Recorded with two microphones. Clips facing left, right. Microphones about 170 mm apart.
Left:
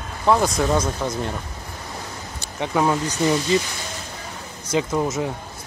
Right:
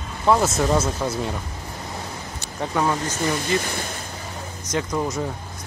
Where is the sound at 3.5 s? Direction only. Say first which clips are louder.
Left 2 dB; 50° right (ahead or behind).